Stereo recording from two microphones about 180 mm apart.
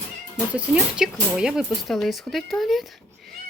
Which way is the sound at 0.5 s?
5° right (ahead or behind).